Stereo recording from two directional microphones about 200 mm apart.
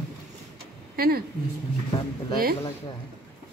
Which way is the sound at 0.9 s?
50° right (ahead or behind).